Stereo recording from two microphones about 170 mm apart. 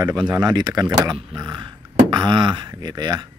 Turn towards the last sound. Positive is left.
turn(degrees=-25)  # may be behind; listen again after turning